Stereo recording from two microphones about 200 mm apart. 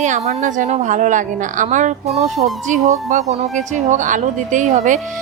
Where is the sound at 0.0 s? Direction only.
35° right (ahead or behind).